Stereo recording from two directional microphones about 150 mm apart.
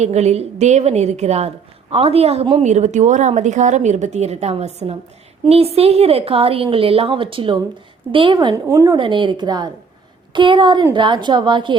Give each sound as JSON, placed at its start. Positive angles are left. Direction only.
{"t": 0.0, "sound": "a woman's voice", "side_deg": -45}
{"t": 9.0, "sound": "a woman's voice", "side_deg": -30}